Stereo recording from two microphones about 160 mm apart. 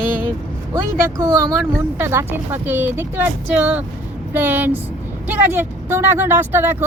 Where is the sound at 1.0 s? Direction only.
15° right (ahead or behind).